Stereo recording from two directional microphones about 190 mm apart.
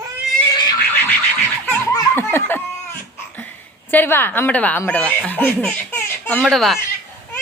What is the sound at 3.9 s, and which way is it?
Speech, 10° left (ahead or behind).